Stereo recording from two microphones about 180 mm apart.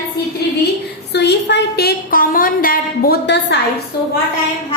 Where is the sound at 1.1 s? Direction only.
70° left (ahead or behind).